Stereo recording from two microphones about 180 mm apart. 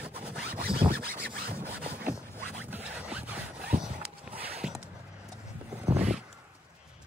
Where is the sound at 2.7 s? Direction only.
10° right (ahead or behind).